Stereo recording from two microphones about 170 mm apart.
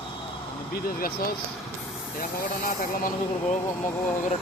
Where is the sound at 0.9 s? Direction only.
60° left (ahead or behind).